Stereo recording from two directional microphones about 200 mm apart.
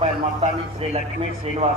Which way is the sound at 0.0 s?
30° right (ahead or behind).